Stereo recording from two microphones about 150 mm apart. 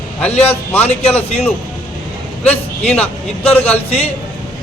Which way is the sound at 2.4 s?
10° left (ahead or behind).